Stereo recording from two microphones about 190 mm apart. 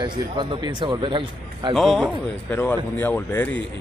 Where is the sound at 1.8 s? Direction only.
Centre (ahead or behind).